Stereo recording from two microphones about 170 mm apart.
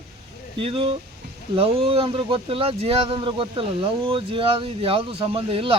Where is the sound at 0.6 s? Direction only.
35° right (ahead or behind).